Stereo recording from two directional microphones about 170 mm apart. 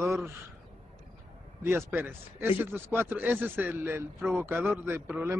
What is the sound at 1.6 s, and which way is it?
A man's voice, 10° right (ahead or behind).